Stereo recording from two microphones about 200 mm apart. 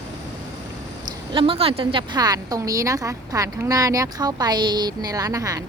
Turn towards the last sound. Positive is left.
turn(degrees=-15)  # may be behind; listen again after turning